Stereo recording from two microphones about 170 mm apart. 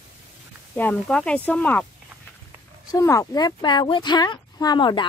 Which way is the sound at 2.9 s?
20° left (ahead or behind).